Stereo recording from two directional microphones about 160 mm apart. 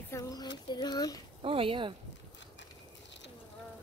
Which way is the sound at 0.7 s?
25° left (ahead or behind).